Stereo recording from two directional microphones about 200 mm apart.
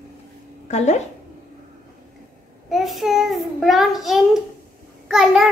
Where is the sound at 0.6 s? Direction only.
35° left (ahead or behind).